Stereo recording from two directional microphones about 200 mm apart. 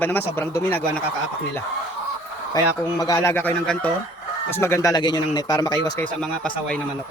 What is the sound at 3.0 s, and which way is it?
A man's voice, 15° left (ahead or behind).